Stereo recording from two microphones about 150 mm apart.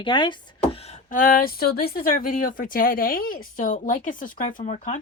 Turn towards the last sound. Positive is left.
turn(degrees=55)  # may be behind; listen again after turning